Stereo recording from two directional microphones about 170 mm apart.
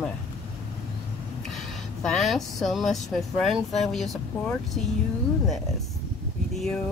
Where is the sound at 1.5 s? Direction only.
Centre (ahead or behind).